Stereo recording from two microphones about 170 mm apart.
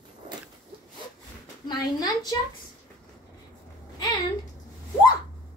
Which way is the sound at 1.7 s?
25° left (ahead or behind).